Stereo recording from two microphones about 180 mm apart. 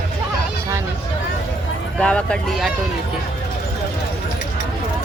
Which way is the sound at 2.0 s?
5° left (ahead or behind).